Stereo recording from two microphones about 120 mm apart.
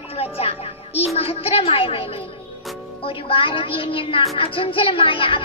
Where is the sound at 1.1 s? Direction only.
55° left (ahead or behind).